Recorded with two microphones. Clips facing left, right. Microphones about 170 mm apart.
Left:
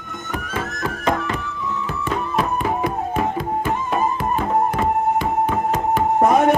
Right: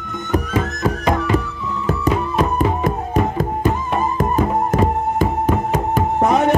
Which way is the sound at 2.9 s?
45° right (ahead or behind).